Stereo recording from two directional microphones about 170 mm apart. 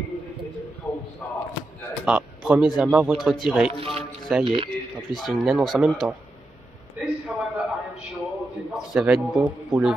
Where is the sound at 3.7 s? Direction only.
35° right (ahead or behind).